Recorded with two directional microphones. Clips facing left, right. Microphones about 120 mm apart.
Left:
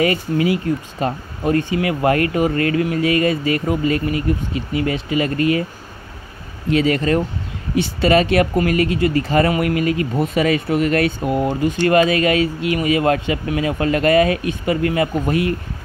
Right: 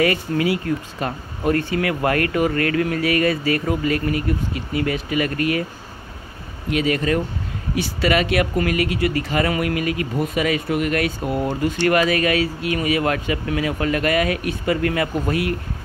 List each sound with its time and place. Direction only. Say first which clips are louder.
0.0 s speech: left 2 dB; 25° left (ahead or behind)
6.7 s speech: left 3 dB; 30° left (ahead or behind)